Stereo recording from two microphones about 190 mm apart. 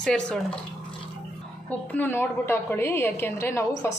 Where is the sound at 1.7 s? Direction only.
10° left (ahead or behind).